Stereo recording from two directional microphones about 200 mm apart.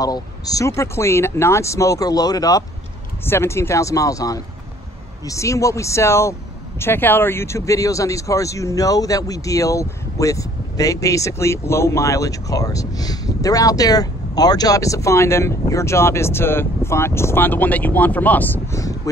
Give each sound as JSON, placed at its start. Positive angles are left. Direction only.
{"t": 0.0, "sound": "speech", "side_deg": 20}